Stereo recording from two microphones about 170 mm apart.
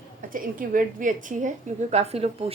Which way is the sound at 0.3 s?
55° right (ahead or behind).